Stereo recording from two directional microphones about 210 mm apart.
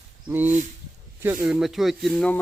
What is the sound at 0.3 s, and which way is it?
Speech, 10° right (ahead or behind).